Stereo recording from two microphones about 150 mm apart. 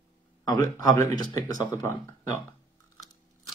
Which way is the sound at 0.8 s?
25° left (ahead or behind).